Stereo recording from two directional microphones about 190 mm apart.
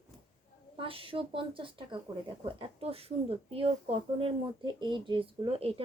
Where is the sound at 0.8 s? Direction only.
30° right (ahead or behind).